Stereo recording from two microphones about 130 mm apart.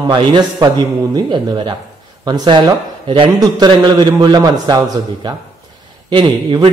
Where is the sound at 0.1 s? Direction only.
35° right (ahead or behind).